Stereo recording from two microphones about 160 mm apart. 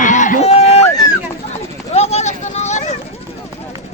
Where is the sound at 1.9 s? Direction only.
40° left (ahead or behind).